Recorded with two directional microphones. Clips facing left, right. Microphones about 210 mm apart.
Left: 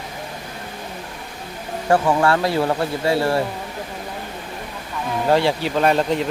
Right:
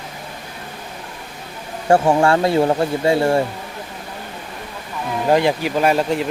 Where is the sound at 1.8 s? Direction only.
25° right (ahead or behind).